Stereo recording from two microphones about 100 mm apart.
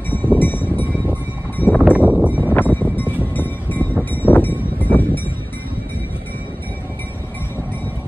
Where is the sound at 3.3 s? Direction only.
20° left (ahead or behind).